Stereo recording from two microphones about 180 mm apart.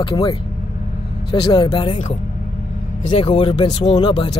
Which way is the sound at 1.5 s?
25° left (ahead or behind).